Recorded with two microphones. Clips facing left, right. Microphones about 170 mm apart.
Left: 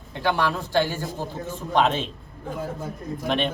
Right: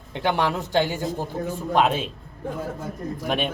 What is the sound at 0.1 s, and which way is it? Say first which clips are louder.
Speech: right 1 dB; 20° right (ahead or behind).